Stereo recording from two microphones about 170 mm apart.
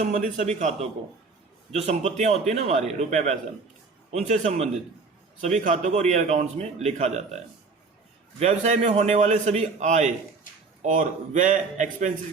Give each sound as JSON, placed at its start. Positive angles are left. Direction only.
{"t": 0.0, "sound": "a man's voice", "side_deg": -50}
{"t": 8.4, "sound": "a man's voice", "side_deg": -45}